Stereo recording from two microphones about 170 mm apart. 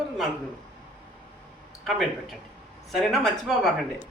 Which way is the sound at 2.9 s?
Centre (ahead or behind).